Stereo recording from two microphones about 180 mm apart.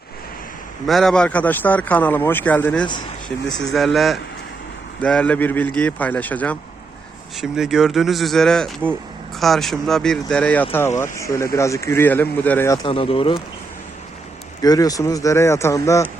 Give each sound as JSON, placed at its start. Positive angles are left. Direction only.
{"t": 0.9, "sound": "speech", "side_deg": 0}
{"t": 7.3, "sound": "speech", "side_deg": -5}
{"t": 12.8, "sound": "speech", "side_deg": 30}
{"t": 14.6, "sound": "speech", "side_deg": 20}